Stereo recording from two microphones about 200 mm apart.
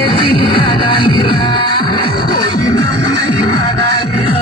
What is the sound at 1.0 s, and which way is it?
Music, 25° left (ahead or behind).